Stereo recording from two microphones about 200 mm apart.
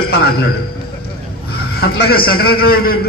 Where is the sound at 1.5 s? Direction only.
50° left (ahead or behind).